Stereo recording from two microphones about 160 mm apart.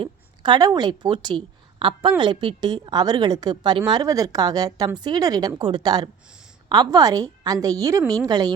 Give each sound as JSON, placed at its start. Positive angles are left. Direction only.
{"t": 0.0, "sound": "a woman's voice", "side_deg": -30}